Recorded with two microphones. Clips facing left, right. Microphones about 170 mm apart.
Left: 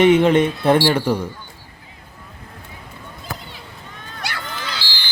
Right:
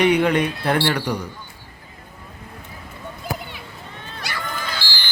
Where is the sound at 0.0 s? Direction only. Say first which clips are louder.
Left 4 dB; 25° left (ahead or behind).